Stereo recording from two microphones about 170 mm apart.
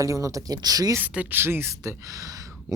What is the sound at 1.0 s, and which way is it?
Speech, 10° right (ahead or behind).